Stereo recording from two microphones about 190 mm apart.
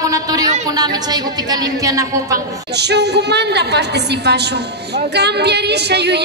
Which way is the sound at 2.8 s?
60° right (ahead or behind).